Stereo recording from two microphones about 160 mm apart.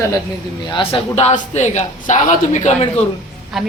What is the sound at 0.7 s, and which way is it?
A man's voice, 40° left (ahead or behind).